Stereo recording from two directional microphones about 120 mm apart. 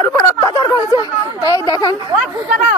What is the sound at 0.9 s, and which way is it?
A man's voice, 30° left (ahead or behind).